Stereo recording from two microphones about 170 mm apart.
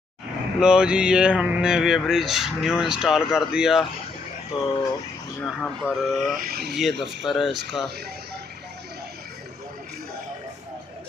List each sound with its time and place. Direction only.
0.6 s speech: 5° right (ahead or behind)
4.5 s speech: 30° left (ahead or behind)
5.4 s speech: 5° left (ahead or behind)